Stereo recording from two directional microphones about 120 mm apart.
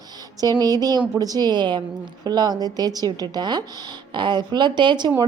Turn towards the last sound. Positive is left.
turn(degrees=-40)  # may be behind; listen again after turning